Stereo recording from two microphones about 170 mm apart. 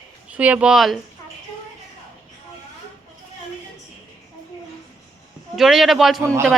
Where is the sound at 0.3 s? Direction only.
10° right (ahead or behind).